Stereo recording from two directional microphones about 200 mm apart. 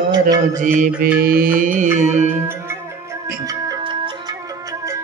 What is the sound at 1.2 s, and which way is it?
Music, 45° right (ahead or behind).